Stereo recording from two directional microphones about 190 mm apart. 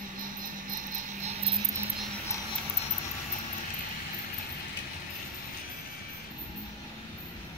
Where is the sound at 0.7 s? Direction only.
40° right (ahead or behind).